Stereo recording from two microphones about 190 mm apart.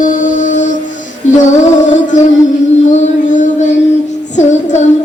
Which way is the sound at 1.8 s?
40° left (ahead or behind).